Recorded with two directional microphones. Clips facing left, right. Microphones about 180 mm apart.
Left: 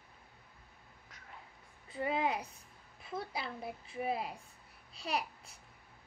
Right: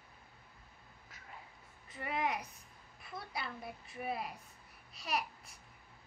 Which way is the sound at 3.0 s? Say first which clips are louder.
Left 4 dB; 25° left (ahead or behind).